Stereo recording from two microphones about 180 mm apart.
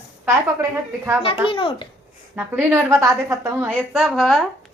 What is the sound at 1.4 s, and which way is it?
Speech, 30° left (ahead or behind).